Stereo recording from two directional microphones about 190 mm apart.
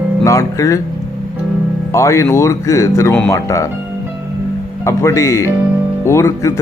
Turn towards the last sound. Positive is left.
turn(degrees=15)  # may be behind; listen again after turning